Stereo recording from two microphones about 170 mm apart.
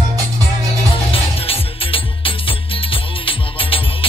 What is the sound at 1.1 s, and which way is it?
Music, 35° left (ahead or behind).